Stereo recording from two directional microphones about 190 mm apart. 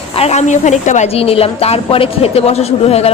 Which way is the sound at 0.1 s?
35° left (ahead or behind).